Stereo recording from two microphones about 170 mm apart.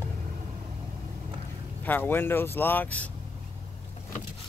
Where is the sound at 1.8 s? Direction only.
10° left (ahead or behind).